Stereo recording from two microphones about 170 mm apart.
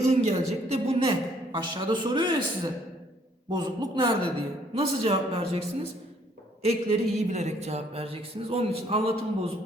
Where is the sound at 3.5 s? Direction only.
25° right (ahead or behind).